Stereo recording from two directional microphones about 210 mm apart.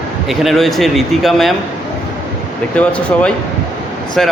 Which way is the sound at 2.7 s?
5° left (ahead or behind).